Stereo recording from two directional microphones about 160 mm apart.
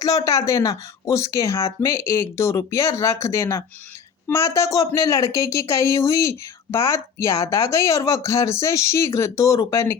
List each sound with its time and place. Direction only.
0.0 s speech: 20° left (ahead or behind)